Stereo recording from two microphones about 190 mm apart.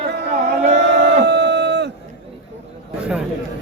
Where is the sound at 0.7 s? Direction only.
60° right (ahead or behind).